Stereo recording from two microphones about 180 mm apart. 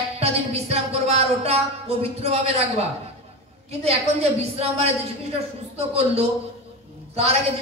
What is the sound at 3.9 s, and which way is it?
Speech, 35° right (ahead or behind).